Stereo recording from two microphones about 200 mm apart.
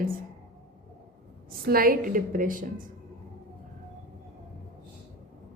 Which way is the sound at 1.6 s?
45° right (ahead or behind).